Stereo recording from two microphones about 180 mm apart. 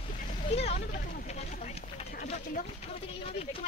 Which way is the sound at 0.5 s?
35° left (ahead or behind).